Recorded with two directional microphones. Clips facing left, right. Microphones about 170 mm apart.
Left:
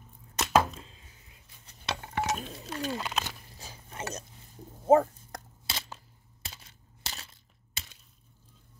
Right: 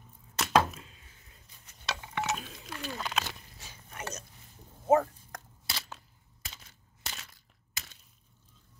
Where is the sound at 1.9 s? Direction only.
50° left (ahead or behind).